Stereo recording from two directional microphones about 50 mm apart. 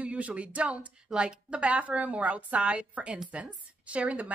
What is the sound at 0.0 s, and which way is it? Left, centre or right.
Speech, right.